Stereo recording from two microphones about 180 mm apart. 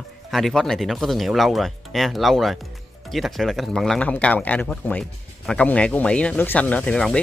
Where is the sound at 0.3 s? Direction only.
Centre (ahead or behind).